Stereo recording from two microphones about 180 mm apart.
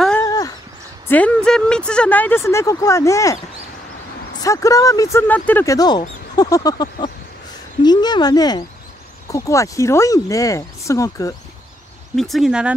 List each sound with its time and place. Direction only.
0.2 s a sound: 20° left (ahead or behind)
1.0 s speech: 10° left (ahead or behind)
4.4 s speech: 20° left (ahead or behind)
12.2 s speech: centre (ahead or behind)